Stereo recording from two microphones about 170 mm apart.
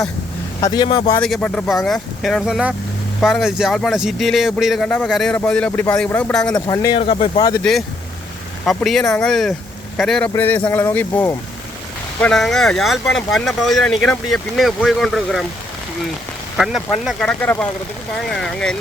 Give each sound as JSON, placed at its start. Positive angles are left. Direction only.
{"t": 0.6, "sound": "speech", "side_deg": 25}
{"t": 1.2, "sound": "speech", "side_deg": 5}
{"t": 6.5, "sound": "speech", "side_deg": 20}
{"t": 7.0, "sound": "speech", "side_deg": 35}
{"t": 7.6, "sound": "speech", "side_deg": 0}
{"t": 16.6, "sound": "speech", "side_deg": 0}